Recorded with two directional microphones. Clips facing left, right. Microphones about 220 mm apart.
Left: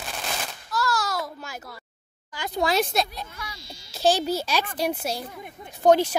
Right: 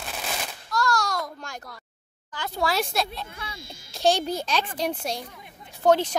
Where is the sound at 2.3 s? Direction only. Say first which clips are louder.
Left 3 dB; 15° left (ahead or behind).